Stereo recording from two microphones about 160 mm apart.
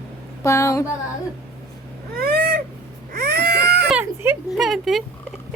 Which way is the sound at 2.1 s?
70° right (ahead or behind).